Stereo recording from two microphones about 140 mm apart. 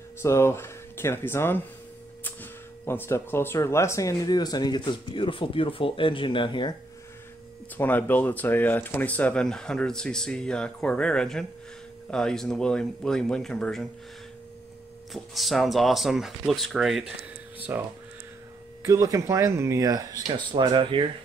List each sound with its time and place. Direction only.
0.2 s speech: 20° left (ahead or behind); by 6.7 s 35° left (ahead or behind)
7.7 s speech: 15° left (ahead or behind)
15.1 s speech: centre (ahead or behind)
17.6 s speech: 10° right (ahead or behind)
18.9 s speech: 25° right (ahead or behind)